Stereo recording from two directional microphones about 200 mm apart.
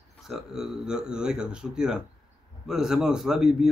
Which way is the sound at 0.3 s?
Centre (ahead or behind).